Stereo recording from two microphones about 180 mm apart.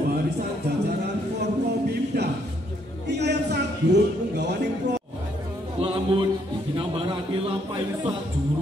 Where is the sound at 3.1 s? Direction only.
70° right (ahead or behind).